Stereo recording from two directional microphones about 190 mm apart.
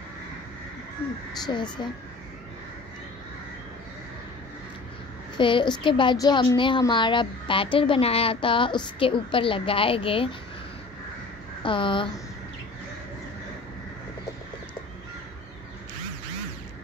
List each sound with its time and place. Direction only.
1.4 s a child's voice: 25° left (ahead or behind)
5.4 s a child's voice: 25° left (ahead or behind)
11.6 s a child's voice: 25° left (ahead or behind)